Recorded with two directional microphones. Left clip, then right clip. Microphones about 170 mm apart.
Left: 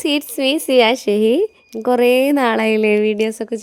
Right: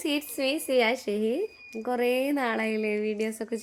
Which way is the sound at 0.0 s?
60° left (ahead or behind).